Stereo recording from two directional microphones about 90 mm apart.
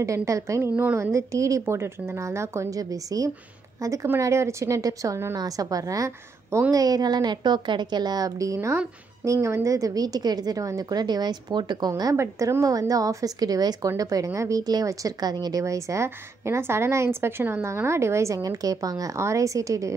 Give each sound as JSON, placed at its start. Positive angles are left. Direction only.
{"t": 0.0, "sound": "a woman's voice", "side_deg": -35}
{"t": 12.0, "sound": "speech", "side_deg": -35}
{"t": 15.6, "sound": "speech", "side_deg": -35}